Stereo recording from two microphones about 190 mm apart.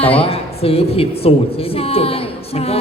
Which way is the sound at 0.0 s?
30° left (ahead or behind).